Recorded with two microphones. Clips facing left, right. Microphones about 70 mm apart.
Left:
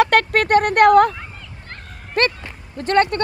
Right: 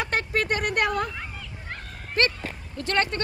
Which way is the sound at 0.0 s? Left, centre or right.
Left.